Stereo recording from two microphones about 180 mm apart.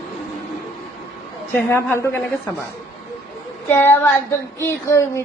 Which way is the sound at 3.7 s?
10° left (ahead or behind).